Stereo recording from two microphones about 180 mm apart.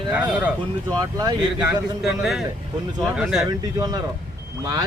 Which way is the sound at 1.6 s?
5° right (ahead or behind).